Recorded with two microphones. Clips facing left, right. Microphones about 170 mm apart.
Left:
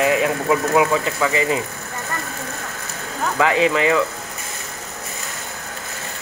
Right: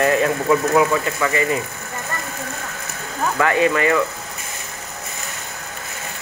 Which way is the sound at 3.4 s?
15° left (ahead or behind).